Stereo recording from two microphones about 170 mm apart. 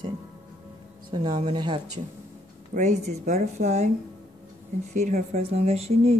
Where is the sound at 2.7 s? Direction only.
45° right (ahead or behind).